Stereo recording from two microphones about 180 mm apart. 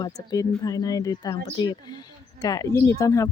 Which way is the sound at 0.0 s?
20° left (ahead or behind).